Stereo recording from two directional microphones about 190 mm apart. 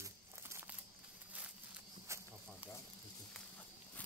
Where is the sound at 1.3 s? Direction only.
5° right (ahead or behind).